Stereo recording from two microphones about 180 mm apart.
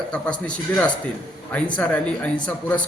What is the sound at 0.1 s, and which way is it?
A man's voice, 5° left (ahead or behind).